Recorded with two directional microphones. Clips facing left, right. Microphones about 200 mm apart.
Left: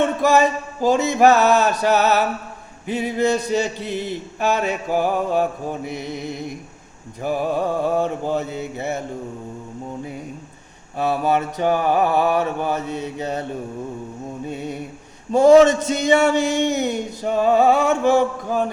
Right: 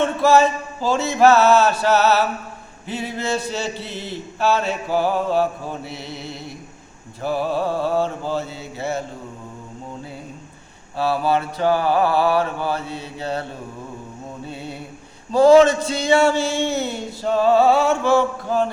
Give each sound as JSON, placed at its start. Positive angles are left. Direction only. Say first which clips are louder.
{"t": 0.0, "sound": "a man's voice", "louder": "right 1 dB", "side_deg": 15}
{"t": 8.7, "sound": "mantra", "louder": "right 4 dB", "side_deg": 20}
{"t": 10.9, "sound": "mantra", "louder": "even", "side_deg": 20}
{"t": 14.4, "sound": "a man's voice", "louder": "left 5 dB", "side_deg": 15}